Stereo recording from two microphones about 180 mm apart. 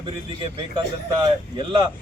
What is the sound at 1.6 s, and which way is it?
Speech, 25° right (ahead or behind).